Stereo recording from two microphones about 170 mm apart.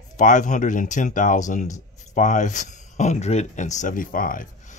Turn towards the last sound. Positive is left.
turn(degrees=55)  # may be behind; listen again after turning